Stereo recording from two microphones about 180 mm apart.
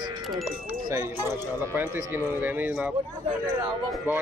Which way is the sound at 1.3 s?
10° right (ahead or behind).